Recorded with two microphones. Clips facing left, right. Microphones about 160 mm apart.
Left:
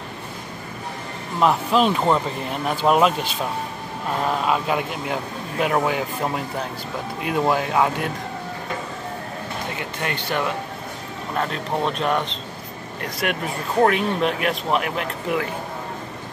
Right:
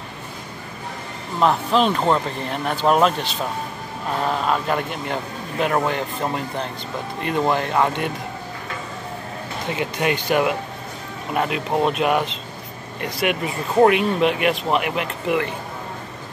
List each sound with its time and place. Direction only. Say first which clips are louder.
1.4 s a man's voice: even; 5° left (ahead or behind)
9.7 s a man's voice: right 9 dB; 20° right (ahead or behind); by 15.5 s centre (ahead or behind)